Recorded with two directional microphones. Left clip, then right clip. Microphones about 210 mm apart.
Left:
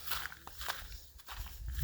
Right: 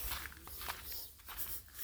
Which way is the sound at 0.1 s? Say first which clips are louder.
Left 7 dB; 55° left (ahead or behind).